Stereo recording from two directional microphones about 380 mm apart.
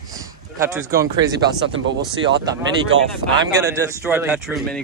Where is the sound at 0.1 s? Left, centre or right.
Centre.